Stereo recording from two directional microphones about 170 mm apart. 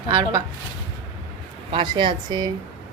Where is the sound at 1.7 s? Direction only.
30° right (ahead or behind).